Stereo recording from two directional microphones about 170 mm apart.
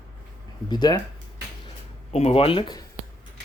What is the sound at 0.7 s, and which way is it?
Speech, 25° left (ahead or behind).